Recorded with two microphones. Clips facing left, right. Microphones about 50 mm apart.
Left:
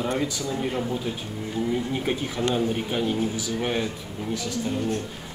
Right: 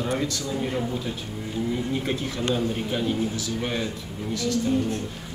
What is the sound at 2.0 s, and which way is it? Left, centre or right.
A man's voice, centre.